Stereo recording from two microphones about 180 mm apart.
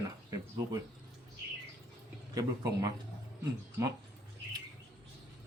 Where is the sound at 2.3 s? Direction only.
20° right (ahead or behind).